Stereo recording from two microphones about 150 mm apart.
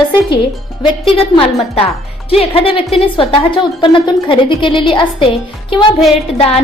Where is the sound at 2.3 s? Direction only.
40° left (ahead or behind).